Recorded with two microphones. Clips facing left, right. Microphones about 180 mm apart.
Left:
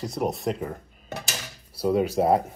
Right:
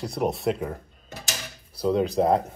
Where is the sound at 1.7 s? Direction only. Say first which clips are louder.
Even; 10° left (ahead or behind).